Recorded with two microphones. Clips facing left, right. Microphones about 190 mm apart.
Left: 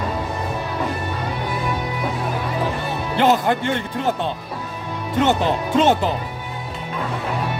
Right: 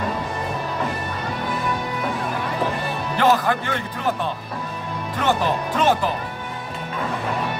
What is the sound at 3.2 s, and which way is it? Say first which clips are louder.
Speech: left 2 dB; 25° left (ahead or behind).